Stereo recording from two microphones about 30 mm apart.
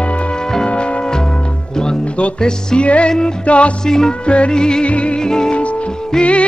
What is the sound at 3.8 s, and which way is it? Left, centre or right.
Music, left.